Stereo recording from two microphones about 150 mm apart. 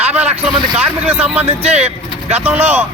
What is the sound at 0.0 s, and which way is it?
Vehicle, 45° right (ahead or behind).